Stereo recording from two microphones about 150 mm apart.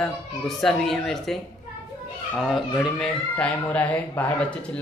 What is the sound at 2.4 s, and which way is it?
A man's voice, centre (ahead or behind).